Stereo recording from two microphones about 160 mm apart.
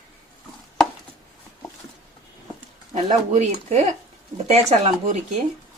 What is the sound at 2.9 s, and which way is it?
Speech, 45° right (ahead or behind).